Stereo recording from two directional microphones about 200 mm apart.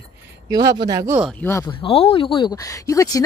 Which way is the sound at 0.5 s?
20° right (ahead or behind).